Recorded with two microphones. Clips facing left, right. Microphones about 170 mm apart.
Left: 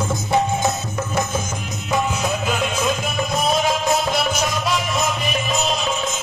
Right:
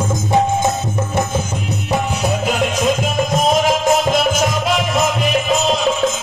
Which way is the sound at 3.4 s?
90° right.